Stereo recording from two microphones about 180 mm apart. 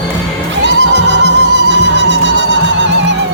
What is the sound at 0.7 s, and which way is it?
Music, 75° right (ahead or behind).